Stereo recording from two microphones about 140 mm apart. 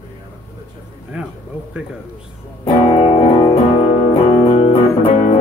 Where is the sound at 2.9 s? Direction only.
45° left (ahead or behind).